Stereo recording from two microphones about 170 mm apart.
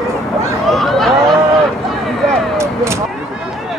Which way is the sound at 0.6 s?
Centre (ahead or behind).